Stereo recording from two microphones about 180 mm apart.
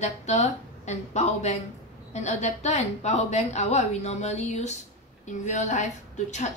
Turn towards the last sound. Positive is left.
turn(degrees=40)  # may be behind; listen again after turning